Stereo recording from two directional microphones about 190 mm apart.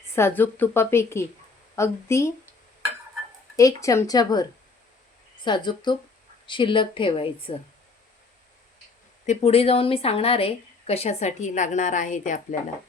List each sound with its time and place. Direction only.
0.2 s a woman's voice: 10° left (ahead or behind)
3.5 s speech: 20° left (ahead or behind)
9.2 s speech: 35° left (ahead or behind)